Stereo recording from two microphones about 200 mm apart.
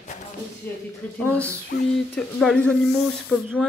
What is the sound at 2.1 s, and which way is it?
Speech, 5° left (ahead or behind).